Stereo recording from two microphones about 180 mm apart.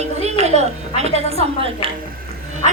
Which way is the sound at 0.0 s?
40° right (ahead or behind).